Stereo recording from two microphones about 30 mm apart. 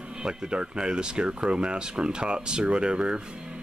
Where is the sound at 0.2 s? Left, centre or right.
Right.